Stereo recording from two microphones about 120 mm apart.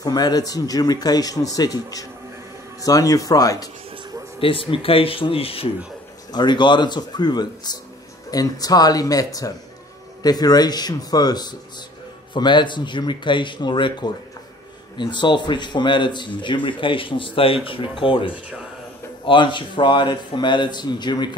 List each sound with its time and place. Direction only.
0.0 s speech: 35° left (ahead or behind)
4.4 s speech: 50° left (ahead or behind)
6.3 s speech: 40° left (ahead or behind)